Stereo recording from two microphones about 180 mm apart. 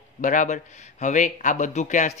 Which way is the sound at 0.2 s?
45° left (ahead or behind).